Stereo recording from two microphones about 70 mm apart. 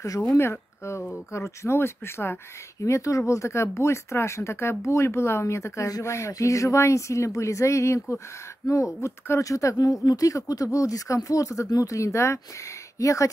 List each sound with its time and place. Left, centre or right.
0.0 s speech: left
0.5 s speech: left
2.8 s speech: left
8.6 s speech: left
9.0 s speech: left